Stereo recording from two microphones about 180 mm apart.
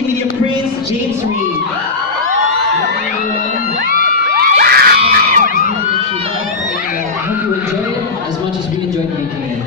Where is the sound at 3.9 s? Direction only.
55° right (ahead or behind).